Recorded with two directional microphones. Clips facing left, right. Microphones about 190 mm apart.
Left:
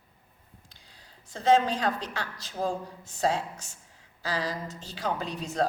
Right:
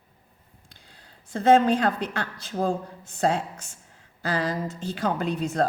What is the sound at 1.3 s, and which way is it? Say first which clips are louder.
A woman's voice: right 5 dB; 55° right (ahead or behind).